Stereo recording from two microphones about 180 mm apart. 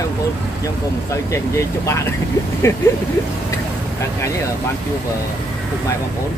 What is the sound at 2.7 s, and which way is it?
Vehicle, 15° left (ahead or behind).